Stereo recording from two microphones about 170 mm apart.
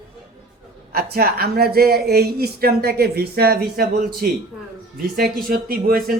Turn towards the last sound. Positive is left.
turn(degrees=-60)  # may be behind; listen again after turning